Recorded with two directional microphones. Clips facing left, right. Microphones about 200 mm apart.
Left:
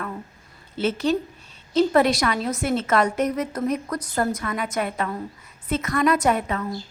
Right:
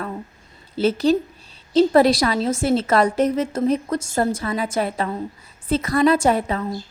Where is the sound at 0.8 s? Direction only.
35° right (ahead or behind).